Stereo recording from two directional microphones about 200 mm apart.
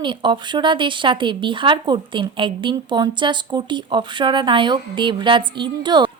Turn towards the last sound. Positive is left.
turn(degrees=-25)  # may be behind; listen again after turning